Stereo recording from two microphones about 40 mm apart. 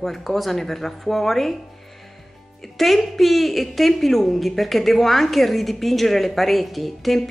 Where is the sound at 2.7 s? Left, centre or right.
Centre.